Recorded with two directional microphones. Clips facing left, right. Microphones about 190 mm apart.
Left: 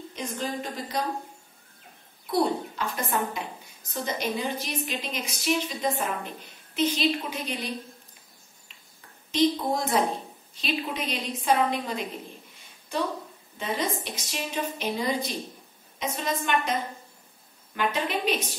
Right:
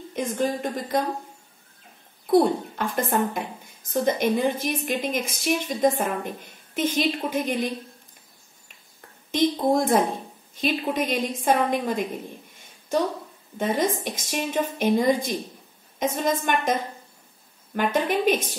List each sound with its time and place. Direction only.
0.1 s a woman's voice: 50° right (ahead or behind)
2.3 s a woman's voice: 50° right (ahead or behind)
9.3 s a woman's voice: 50° right (ahead or behind)
13.6 s a woman's voice: 50° right (ahead or behind)
17.7 s a woman's voice: 50° right (ahead or behind)